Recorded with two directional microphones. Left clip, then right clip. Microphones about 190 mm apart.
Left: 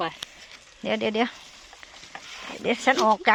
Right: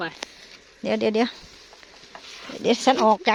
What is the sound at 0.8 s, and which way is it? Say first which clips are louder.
Speech: right 3 dB; 35° right (ahead or behind).